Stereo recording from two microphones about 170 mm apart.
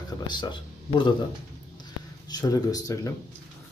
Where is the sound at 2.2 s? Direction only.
20° left (ahead or behind).